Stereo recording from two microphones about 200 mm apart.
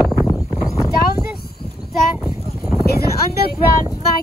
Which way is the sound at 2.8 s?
50° left (ahead or behind).